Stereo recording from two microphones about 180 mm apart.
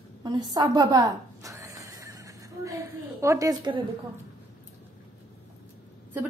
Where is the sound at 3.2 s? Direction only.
15° right (ahead or behind).